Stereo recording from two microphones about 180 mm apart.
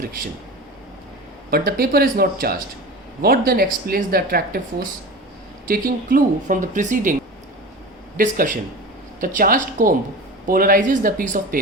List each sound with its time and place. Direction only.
0.0 s speech: 50° right (ahead or behind)
1.5 s speech: 55° right (ahead or behind)